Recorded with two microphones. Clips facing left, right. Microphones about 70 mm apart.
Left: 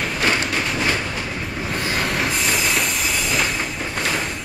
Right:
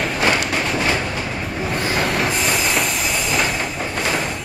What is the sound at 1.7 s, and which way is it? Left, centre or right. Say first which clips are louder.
Train: right 3 dB; centre.